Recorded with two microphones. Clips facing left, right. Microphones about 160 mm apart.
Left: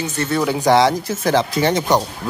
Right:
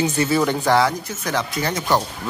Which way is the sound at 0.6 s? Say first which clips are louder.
Left 7 dB; 20° left (ahead or behind).